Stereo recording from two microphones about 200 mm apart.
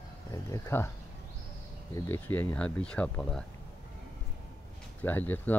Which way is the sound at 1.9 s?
10° left (ahead or behind).